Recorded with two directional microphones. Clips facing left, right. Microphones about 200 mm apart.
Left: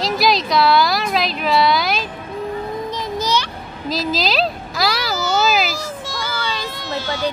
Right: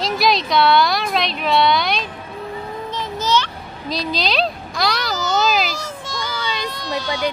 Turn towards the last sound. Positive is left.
turn(degrees=5)  # may be behind; listen again after turning